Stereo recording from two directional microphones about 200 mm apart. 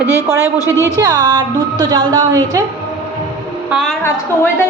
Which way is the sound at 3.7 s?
5° right (ahead or behind).